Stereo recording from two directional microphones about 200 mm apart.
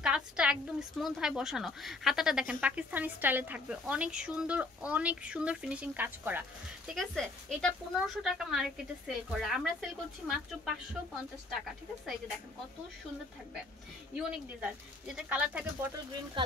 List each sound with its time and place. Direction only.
0.0 s speech: 5° right (ahead or behind)
6.9 s speech: 5° left (ahead or behind)
14.1 s speech: 5° right (ahead or behind)
16.4 s speech: 25° right (ahead or behind)